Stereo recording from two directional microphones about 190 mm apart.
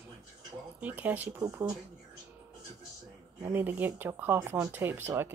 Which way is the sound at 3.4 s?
10° right (ahead or behind).